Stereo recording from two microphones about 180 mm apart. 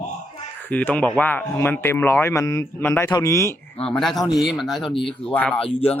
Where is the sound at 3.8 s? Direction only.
5° left (ahead or behind).